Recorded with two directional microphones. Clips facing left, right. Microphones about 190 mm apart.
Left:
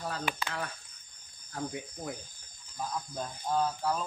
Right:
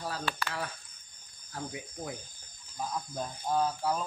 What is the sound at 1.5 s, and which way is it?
Cricket, centre (ahead or behind).